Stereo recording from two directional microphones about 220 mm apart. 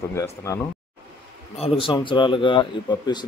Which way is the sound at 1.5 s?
25° left (ahead or behind).